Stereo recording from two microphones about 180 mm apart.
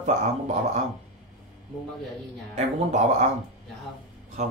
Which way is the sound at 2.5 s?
40° right (ahead or behind).